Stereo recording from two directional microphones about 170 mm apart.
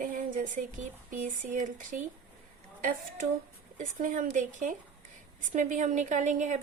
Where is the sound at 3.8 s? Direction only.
50° right (ahead or behind).